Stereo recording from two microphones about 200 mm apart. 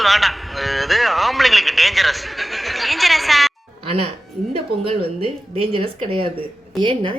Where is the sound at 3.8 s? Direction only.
30° right (ahead or behind).